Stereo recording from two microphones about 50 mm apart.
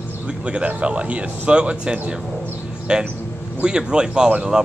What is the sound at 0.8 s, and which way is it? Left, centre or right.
Speech, right.